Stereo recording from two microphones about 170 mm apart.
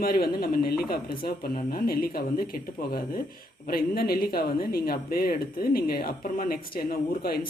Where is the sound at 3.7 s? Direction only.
60° left (ahead or behind).